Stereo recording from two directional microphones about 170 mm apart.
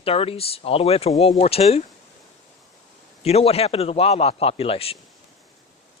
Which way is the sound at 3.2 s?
35° left (ahead or behind).